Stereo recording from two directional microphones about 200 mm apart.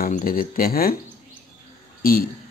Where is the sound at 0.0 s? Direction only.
45° left (ahead or behind).